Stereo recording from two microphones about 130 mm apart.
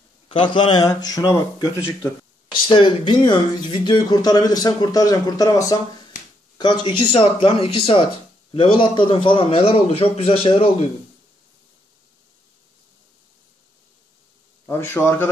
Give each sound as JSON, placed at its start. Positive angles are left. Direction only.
{"t": 0.3, "sound": "speech", "side_deg": 40}
{"t": 2.7, "sound": "a man's voice", "side_deg": 40}
{"t": 14.7, "sound": "a man's voice", "side_deg": 20}